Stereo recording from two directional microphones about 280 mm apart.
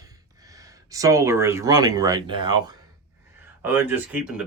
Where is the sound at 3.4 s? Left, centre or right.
Centre.